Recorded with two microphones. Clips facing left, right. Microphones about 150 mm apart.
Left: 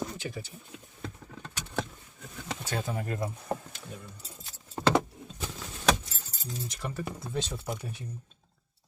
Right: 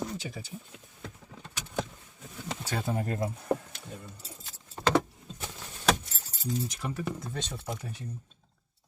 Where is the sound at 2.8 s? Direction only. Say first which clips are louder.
Right 2 dB; 35° right (ahead or behind).